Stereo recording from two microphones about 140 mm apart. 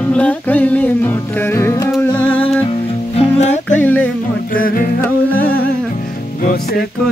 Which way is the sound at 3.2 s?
50° left (ahead or behind).